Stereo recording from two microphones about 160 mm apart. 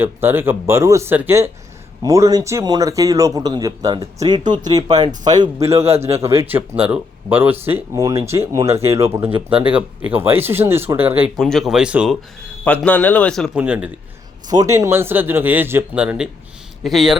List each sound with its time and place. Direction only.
0.0 s a man's voice: 15° right (ahead or behind)
5.8 s a man's voice: 40° right (ahead or behind)
6.4 s a man's voice: 10° right (ahead or behind)
9.5 s a man's voice: 35° right (ahead or behind)
9.7 s speech: 10° right (ahead or behind)
11.3 s speech: centre (ahead or behind)
12.6 s speech: 10° left (ahead or behind)
13.5 s speech: 10° right (ahead or behind)
14.4 s speech: 25° right (ahead or behind); by 17.2 s centre (ahead or behind)